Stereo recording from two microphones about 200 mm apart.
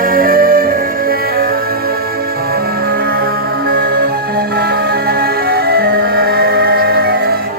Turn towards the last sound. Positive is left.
turn(degrees=-50)  # may be behind; listen again after turning